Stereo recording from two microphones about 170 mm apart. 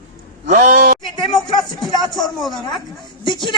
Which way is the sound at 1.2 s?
25° left (ahead or behind).